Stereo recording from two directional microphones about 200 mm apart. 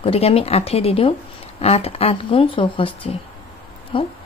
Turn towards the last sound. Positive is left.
turn(degrees=25)  # may be behind; listen again after turning